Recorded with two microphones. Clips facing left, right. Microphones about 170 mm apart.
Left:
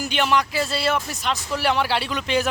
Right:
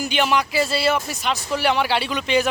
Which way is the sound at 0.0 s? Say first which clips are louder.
Right 1 dB; centre (ahead or behind).